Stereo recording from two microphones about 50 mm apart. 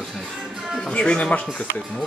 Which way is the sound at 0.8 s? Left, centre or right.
Centre.